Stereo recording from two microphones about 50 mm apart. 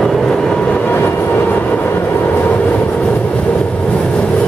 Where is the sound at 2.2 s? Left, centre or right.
Left.